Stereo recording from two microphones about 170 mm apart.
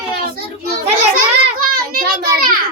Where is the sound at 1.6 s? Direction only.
60° right (ahead or behind).